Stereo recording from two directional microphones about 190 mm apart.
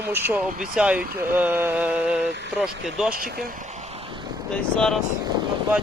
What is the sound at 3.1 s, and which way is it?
Speech, 50° right (ahead or behind).